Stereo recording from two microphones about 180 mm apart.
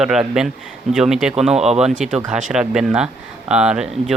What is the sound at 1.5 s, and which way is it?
Speech, 35° right (ahead or behind).